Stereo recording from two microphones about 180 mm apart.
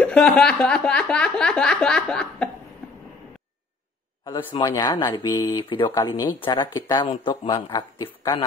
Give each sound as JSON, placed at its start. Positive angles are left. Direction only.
{"t": 0.0, "sound": "snicker", "side_deg": 5}
{"t": 4.2, "sound": "a sound", "side_deg": 15}
{"t": 4.5, "sound": "a man's voice", "side_deg": 25}